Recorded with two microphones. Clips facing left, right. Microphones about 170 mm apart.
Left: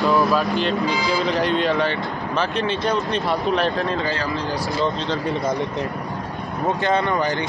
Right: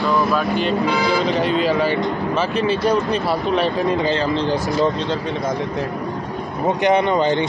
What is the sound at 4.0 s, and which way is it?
Speech, 25° right (ahead or behind).